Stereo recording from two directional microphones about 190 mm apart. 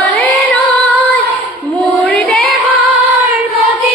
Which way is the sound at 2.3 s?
Centre (ahead or behind).